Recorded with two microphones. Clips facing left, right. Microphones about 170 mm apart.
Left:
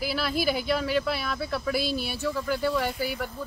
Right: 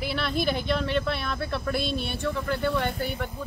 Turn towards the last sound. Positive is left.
turn(degrees=5)  # may be behind; listen again after turning